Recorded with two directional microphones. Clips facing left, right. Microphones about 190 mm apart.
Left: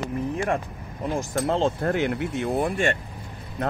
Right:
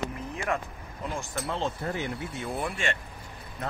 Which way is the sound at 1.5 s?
75° left (ahead or behind).